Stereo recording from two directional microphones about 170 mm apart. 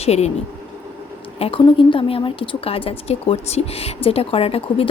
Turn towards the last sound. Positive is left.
turn(degrees=35)  # may be behind; listen again after turning